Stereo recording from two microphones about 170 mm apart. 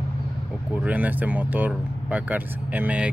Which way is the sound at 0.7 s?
10° right (ahead or behind).